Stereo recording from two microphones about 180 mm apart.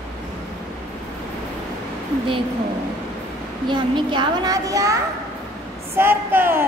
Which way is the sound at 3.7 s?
25° right (ahead or behind).